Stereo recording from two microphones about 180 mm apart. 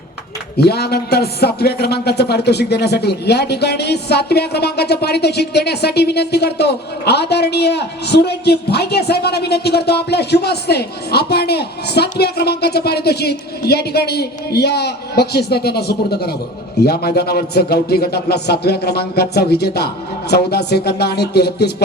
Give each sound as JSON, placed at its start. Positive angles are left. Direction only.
{"t": 0.6, "sound": "speech", "side_deg": 65}